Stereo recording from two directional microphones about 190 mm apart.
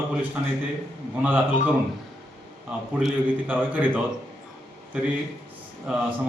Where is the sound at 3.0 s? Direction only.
10° right (ahead or behind).